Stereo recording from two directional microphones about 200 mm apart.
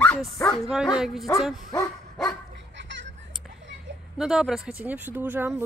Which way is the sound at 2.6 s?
65° right (ahead or behind).